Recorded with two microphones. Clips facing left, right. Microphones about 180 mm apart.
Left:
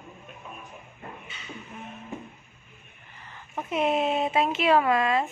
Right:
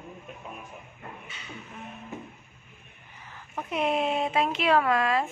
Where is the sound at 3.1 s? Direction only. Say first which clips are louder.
Even; 10° right (ahead or behind).